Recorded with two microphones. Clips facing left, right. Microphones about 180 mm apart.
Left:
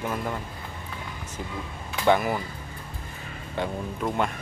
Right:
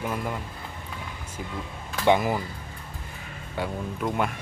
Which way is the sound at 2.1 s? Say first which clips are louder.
Even; 15° right (ahead or behind).